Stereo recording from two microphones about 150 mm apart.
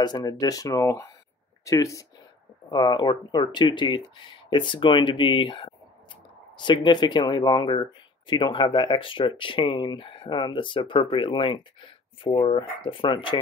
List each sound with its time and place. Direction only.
0.0 s speech: 30° left (ahead or behind)